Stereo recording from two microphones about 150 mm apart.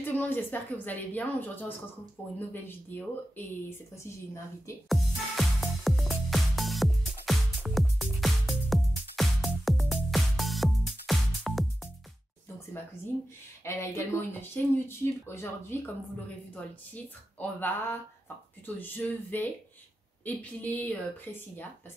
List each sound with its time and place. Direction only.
0.0 s a woman's voice: 15° left (ahead or behind)
4.8 s music: centre (ahead or behind)
13.7 s speech: 20° left (ahead or behind)
18.8 s speech: 10° left (ahead or behind)